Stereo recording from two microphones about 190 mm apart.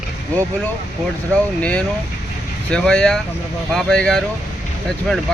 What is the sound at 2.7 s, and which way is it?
Speech, 5° left (ahead or behind).